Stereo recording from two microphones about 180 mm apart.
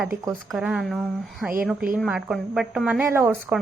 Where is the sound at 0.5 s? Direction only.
5° right (ahead or behind).